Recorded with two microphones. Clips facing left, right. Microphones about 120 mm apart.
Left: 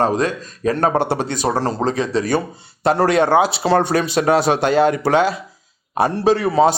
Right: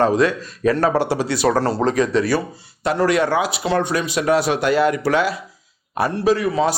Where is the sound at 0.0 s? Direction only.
40° left (ahead or behind); by 1.4 s 55° left (ahead or behind).